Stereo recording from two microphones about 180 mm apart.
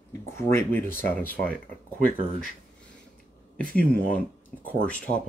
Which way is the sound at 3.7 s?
10° left (ahead or behind).